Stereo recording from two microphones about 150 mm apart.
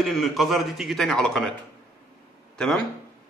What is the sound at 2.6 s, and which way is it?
Speech, centre (ahead or behind).